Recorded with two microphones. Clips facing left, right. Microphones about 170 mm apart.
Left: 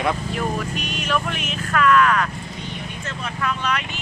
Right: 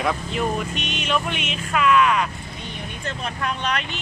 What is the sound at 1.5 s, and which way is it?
Speech, 10° right (ahead or behind).